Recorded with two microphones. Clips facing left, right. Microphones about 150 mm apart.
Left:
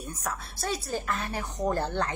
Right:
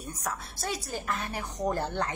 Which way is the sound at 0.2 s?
15° right (ahead or behind).